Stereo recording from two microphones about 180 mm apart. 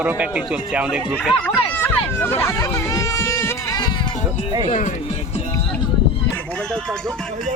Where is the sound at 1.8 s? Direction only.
10° left (ahead or behind).